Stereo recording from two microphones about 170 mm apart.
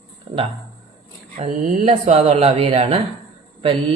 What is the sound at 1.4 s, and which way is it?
Speech, 40° right (ahead or behind).